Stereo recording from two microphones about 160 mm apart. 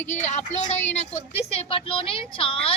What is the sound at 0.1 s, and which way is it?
A woman's voice, 45° left (ahead or behind).